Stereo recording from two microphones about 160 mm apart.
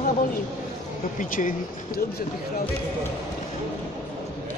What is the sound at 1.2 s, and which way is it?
Speech, 55° left (ahead or behind).